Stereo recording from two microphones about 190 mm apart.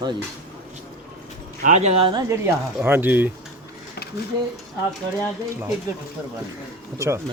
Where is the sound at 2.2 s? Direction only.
15° right (ahead or behind).